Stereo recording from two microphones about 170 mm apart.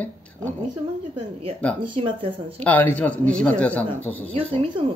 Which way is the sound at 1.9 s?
35° right (ahead or behind).